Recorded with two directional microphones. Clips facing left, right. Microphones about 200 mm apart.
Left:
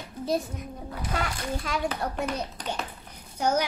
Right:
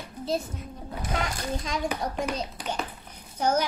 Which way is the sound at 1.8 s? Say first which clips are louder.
Right 2 dB; 10° right (ahead or behind).